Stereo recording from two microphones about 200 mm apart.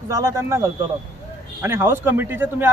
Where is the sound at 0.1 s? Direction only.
15° right (ahead or behind).